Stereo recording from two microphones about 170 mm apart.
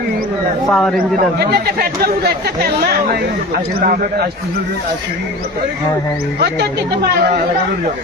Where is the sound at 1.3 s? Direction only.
65° right (ahead or behind).